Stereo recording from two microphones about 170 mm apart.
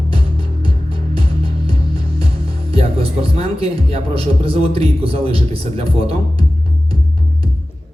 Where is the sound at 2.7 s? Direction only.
35° right (ahead or behind).